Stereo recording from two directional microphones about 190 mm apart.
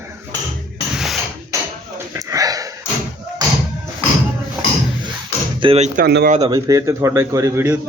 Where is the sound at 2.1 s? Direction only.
20° right (ahead or behind).